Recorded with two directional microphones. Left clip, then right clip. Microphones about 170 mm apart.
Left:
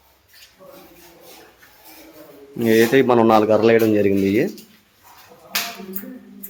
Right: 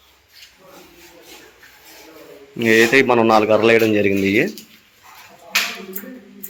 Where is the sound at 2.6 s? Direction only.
15° left (ahead or behind).